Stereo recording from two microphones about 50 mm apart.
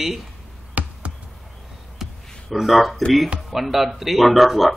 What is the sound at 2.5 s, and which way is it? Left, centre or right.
Speech, centre.